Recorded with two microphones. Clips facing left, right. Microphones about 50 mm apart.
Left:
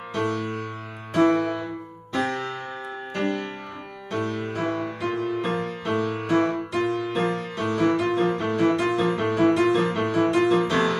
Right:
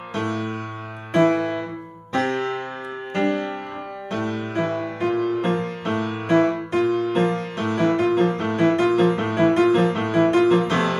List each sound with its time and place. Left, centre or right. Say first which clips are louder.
0.1 s music: even; right